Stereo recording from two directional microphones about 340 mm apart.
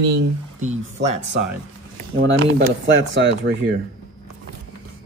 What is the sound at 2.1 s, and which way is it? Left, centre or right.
Speech, right.